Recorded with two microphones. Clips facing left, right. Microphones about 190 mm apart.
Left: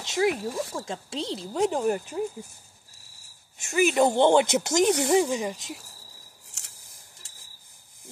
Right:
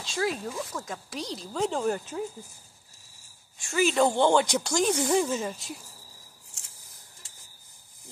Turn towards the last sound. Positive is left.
turn(degrees=75)  # may be behind; listen again after turning